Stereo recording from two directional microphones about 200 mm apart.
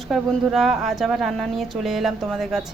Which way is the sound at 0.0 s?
Centre (ahead or behind).